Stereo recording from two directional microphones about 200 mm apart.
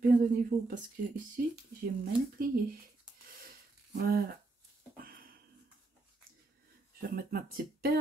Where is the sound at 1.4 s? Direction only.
45° right (ahead or behind).